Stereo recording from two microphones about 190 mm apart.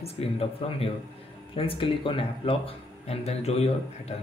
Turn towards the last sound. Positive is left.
turn(degrees=35)  # may be behind; listen again after turning